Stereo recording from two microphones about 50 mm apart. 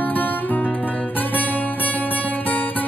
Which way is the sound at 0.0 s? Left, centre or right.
Left.